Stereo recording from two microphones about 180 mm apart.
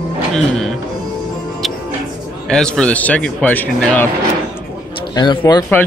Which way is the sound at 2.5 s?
5° left (ahead or behind).